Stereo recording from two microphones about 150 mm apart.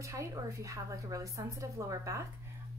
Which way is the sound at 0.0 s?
20° right (ahead or behind).